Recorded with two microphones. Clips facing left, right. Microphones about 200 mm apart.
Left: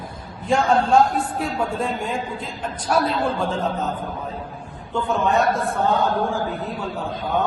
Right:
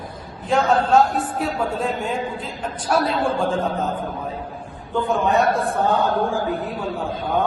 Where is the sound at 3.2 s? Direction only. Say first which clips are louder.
Right 2 dB; 50° right (ahead or behind).